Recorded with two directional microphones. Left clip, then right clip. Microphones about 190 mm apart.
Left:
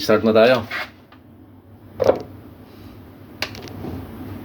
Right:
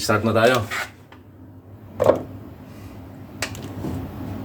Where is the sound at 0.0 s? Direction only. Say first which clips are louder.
Left 5 dB; 30° left (ahead or behind).